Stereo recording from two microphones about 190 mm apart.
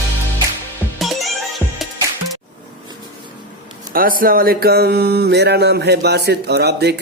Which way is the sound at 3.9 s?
50° right (ahead or behind).